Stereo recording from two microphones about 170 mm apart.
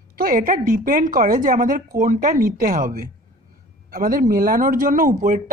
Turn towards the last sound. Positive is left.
turn(degrees=-50)  # may be behind; listen again after turning